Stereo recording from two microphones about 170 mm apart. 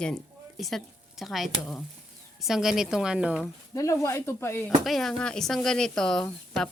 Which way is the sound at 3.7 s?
20° left (ahead or behind).